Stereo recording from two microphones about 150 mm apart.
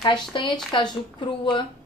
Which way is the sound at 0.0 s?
30° left (ahead or behind).